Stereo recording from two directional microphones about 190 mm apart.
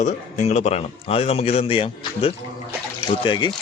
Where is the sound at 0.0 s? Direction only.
40° left (ahead or behind).